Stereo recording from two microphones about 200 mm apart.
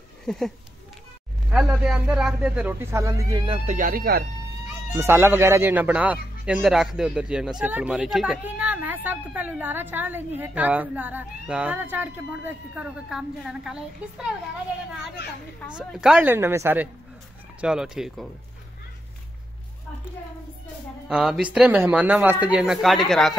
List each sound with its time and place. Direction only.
0.3 s speech: centre (ahead or behind)
1.7 s speech: 5° right (ahead or behind)
3.4 s speech: 35° right (ahead or behind)
4.9 s speech: 10° right (ahead or behind)
15.7 s speech: centre (ahead or behind)
21.1 s speech: 5° right (ahead or behind)